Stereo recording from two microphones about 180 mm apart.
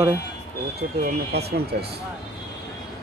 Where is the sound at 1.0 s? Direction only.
60° right (ahead or behind).